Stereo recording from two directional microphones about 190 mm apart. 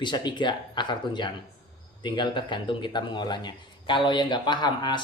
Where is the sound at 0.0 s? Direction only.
25° left (ahead or behind).